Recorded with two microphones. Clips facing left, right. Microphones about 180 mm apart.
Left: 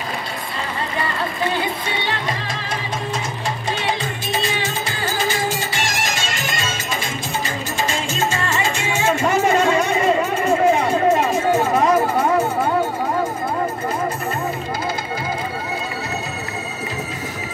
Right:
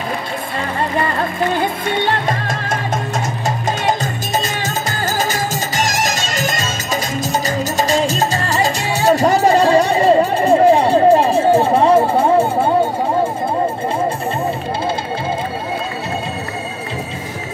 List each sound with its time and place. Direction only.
1.5 s music: 50° right (ahead or behind); by 12.7 s 30° right (ahead or behind)